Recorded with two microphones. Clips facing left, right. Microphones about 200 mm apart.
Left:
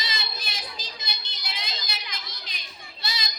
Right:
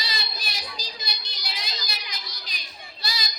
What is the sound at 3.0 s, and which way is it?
Child singing, 25° left (ahead or behind).